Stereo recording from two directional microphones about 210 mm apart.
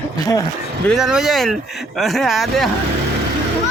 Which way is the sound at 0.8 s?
Centre (ahead or behind).